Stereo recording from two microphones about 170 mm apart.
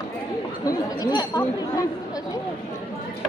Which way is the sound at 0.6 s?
20° left (ahead or behind).